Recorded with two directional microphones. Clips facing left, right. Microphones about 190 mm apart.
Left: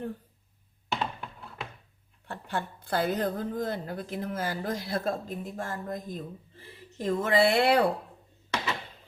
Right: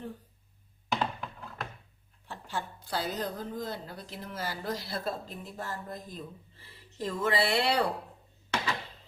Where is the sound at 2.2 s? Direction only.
55° left (ahead or behind).